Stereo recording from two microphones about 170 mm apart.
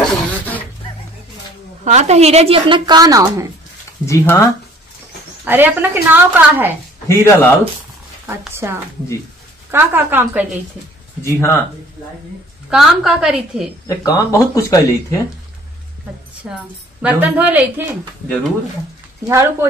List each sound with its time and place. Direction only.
0.0 s a sound: 10° left (ahead or behind)
1.9 s a woman's voice: 40° right (ahead or behind); by 3.4 s 20° right (ahead or behind)
4.0 s speech: 15° left (ahead or behind)
5.4 s a woman's voice: 10° right (ahead or behind)
7.1 s speech: 15° left (ahead or behind)
8.3 s a woman's voice: 15° right (ahead or behind)
11.2 s speech: 15° left (ahead or behind)
12.6 s a woman's voice: centre (ahead or behind)
13.8 s speech: 20° left (ahead or behind)
16.5 s a woman's voice: 5° right (ahead or behind)